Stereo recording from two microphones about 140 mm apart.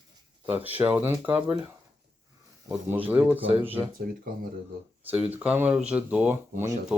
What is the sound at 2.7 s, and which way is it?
Speech, 15° right (ahead or behind).